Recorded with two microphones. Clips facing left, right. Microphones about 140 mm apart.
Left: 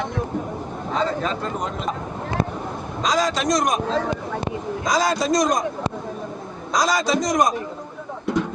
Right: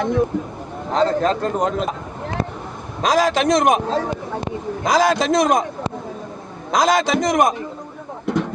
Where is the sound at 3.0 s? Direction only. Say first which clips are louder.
Right 5 dB; 55° right (ahead or behind).